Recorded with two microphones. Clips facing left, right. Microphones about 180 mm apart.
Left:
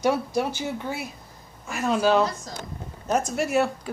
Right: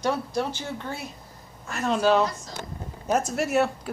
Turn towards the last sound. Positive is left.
turn(degrees=0)  # may be behind; listen again after turning